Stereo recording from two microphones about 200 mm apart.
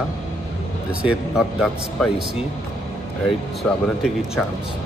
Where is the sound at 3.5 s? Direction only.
Centre (ahead or behind).